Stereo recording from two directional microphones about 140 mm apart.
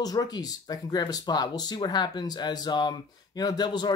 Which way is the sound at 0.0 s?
30° left (ahead or behind).